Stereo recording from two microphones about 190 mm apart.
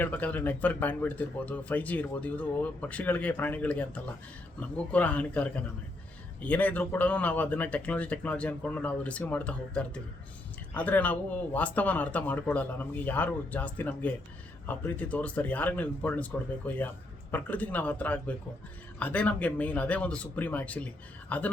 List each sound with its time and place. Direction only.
0.0 s speech: 10° left (ahead or behind)